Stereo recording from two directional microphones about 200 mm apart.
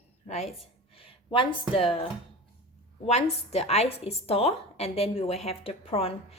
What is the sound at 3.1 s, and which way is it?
A woman's voice, 30° left (ahead or behind).